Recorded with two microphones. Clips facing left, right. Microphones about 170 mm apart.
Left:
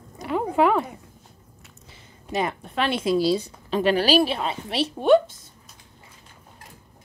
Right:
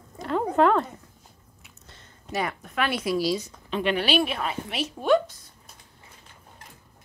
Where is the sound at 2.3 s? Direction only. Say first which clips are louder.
Left 3 dB; 25° left (ahead or behind).